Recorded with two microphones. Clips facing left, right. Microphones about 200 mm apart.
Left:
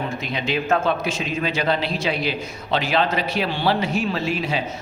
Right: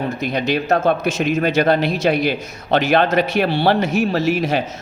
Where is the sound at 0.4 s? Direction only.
40° right (ahead or behind).